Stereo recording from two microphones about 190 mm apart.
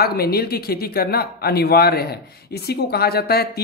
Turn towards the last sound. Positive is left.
turn(degrees=55)  # may be behind; listen again after turning